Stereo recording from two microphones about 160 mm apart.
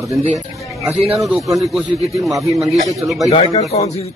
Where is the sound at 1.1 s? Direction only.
Centre (ahead or behind).